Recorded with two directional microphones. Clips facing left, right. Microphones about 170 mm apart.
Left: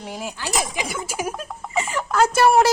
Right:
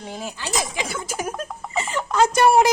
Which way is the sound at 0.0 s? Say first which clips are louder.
Left 1 dB; 10° left (ahead or behind).